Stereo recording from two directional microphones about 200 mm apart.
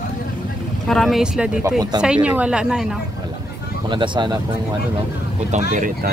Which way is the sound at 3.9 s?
25° right (ahead or behind).